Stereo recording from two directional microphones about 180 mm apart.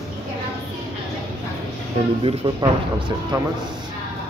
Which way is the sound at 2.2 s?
30° right (ahead or behind).